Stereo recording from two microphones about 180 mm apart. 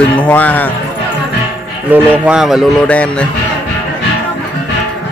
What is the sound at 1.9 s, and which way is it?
A man's voice, 10° right (ahead or behind).